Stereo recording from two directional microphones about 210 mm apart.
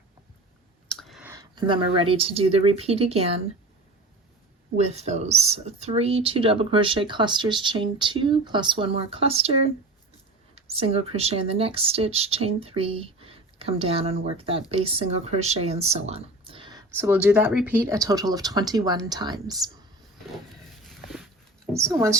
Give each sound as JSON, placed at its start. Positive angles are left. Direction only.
{"t": 0.9, "sound": "clicking", "side_deg": 0}
{"t": 1.3, "sound": "speech", "side_deg": -20}
{"t": 4.8, "sound": "speech", "side_deg": -30}
{"t": 17.0, "sound": "speech", "side_deg": -10}
{"t": 21.7, "sound": "a sound", "side_deg": -15}